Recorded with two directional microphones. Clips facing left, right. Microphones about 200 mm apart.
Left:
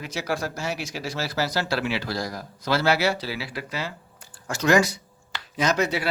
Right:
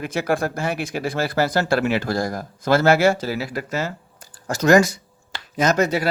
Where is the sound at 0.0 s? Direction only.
55° right (ahead or behind).